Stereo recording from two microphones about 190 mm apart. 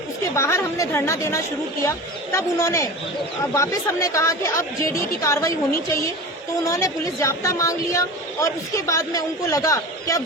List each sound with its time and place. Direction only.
0.3 s speech: 15° left (ahead or behind)
6.7 s speech: 15° left (ahead or behind)